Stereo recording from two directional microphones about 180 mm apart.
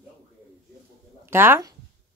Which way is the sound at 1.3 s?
15° right (ahead or behind).